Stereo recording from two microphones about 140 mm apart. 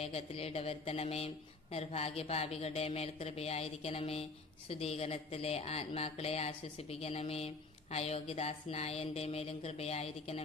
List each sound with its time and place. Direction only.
0.0 s speech: 45° left (ahead or behind)